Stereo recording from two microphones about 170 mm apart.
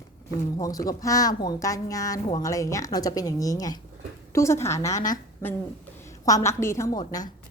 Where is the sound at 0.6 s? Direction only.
20° left (ahead or behind).